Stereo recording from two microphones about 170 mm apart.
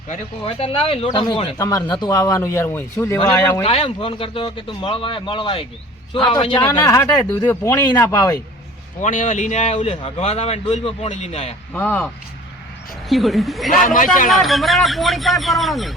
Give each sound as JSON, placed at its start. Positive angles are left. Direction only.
{"t": 0.1, "sound": "a man's voice", "side_deg": 35}
{"t": 1.5, "sound": "speech", "side_deg": 20}
{"t": 3.6, "sound": "a man's voice", "side_deg": 35}
{"t": 6.7, "sound": "speech", "side_deg": 20}
{"t": 9.0, "sound": "a man's voice", "side_deg": 45}
{"t": 11.7, "sound": "speech", "side_deg": 10}
{"t": 13.1, "sound": "speech", "side_deg": 0}
{"t": 13.7, "sound": "a man's voice", "side_deg": 50}
{"t": 14.3, "sound": "speech", "side_deg": 0}